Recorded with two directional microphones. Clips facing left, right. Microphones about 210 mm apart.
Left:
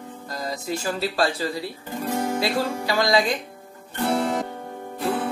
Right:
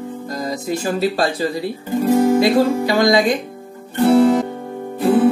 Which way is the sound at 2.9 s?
20° right (ahead or behind).